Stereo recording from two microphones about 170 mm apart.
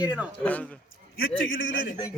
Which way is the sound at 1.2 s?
90° left.